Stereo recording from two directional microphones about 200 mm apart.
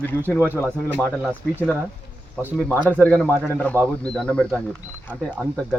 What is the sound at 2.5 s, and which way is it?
Speech, 5° left (ahead or behind).